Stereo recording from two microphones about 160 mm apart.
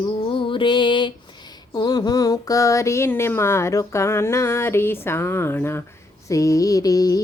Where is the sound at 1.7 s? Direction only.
25° left (ahead or behind).